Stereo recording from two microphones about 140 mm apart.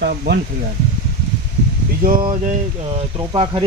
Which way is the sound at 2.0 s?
90° right.